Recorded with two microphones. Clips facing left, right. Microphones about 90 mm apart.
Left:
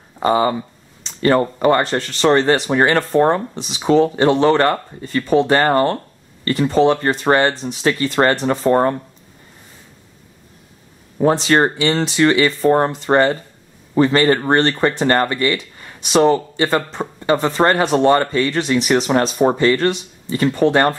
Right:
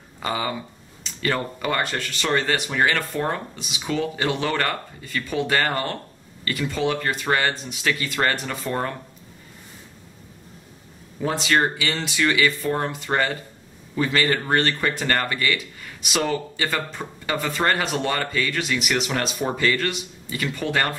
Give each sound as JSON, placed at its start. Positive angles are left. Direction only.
{"t": 0.2, "sound": "speech", "side_deg": 35}
{"t": 11.1, "sound": "speech", "side_deg": 40}